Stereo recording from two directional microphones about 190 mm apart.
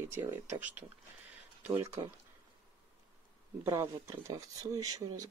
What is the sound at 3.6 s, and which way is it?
Speech, 15° right (ahead or behind).